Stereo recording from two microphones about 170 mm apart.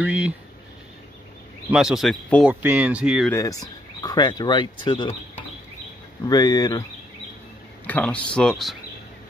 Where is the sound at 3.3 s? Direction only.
20° left (ahead or behind).